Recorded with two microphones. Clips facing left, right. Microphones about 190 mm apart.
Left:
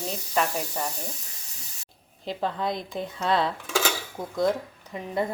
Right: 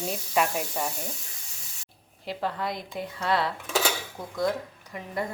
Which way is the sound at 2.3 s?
20° left (ahead or behind).